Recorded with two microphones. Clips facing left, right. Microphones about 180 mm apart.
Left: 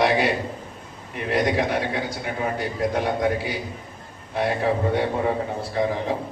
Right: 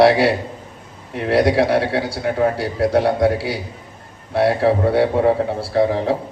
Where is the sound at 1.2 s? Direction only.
85° right.